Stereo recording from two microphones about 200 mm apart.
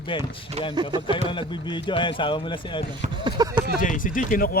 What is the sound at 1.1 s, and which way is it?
Speech, 25° left (ahead or behind).